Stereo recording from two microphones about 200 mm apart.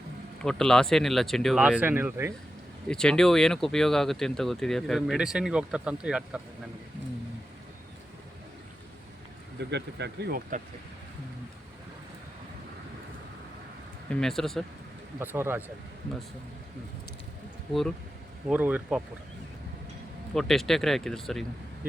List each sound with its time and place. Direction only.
0.4 s speech: 5° left (ahead or behind)
2.8 s speech: 5° left (ahead or behind)
9.6 s speech: 60° right (ahead or behind)
14.1 s speech: centre (ahead or behind)
15.2 s speech: 10° right (ahead or behind)
18.4 s speech: 5° right (ahead or behind)
20.3 s speech: centre (ahead or behind)